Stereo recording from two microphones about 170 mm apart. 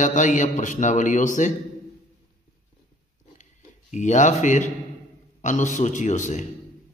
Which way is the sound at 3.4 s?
45° left (ahead or behind).